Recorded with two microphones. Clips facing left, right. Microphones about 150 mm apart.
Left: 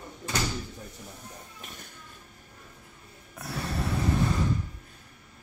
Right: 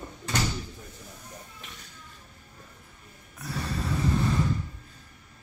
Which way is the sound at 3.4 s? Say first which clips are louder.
Even; 60° left (ahead or behind).